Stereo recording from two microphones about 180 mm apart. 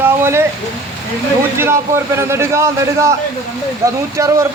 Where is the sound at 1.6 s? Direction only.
15° right (ahead or behind).